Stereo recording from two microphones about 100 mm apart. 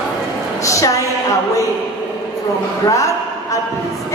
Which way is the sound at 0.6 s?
35° left (ahead or behind).